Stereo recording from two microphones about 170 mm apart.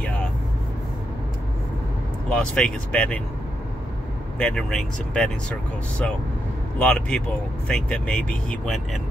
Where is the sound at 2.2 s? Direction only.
5° left (ahead or behind).